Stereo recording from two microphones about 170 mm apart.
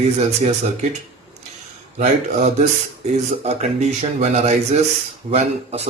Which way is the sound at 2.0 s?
40° right (ahead or behind).